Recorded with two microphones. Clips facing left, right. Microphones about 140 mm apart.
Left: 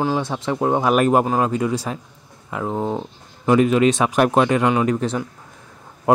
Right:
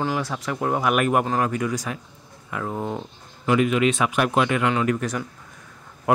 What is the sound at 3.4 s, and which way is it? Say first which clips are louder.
Speech: left 5 dB; 35° left (ahead or behind).